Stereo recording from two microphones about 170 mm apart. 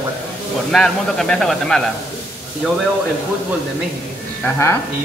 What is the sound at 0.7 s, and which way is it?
Speech, centre (ahead or behind).